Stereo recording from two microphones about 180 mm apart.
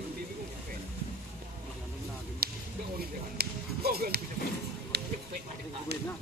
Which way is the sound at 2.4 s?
60° right (ahead or behind).